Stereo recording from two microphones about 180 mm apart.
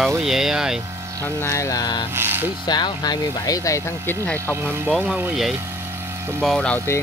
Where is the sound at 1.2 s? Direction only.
15° left (ahead or behind).